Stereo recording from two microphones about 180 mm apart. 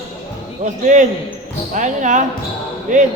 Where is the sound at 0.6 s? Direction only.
45° right (ahead or behind).